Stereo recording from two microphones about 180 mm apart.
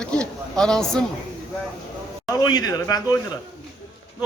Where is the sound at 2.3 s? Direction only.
20° left (ahead or behind).